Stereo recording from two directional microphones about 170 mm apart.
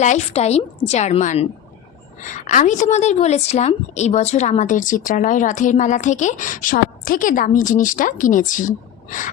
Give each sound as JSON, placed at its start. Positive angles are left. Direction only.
{"t": 0.0, "sound": "a woman's voice", "side_deg": 40}